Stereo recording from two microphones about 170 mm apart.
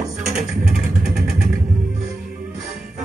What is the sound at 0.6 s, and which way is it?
Vehicle, 5° right (ahead or behind).